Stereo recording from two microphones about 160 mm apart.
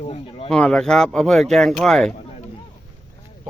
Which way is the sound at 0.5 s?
5° left (ahead or behind).